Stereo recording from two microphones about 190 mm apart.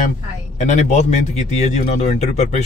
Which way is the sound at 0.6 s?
40° left (ahead or behind).